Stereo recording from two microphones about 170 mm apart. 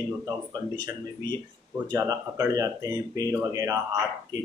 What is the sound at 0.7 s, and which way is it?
Speech, 25° right (ahead or behind).